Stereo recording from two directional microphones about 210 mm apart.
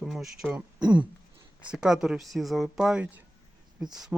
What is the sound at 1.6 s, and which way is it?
Speech, 5° right (ahead or behind).